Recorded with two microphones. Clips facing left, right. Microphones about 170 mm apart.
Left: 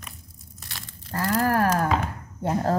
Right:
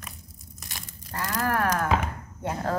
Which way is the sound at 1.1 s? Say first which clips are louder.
Left 5 dB; 35° left (ahead or behind).